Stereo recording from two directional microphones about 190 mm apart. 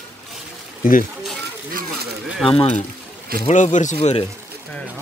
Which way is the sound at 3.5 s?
40° left (ahead or behind).